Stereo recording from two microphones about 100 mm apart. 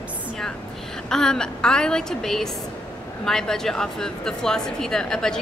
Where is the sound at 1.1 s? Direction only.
5° left (ahead or behind).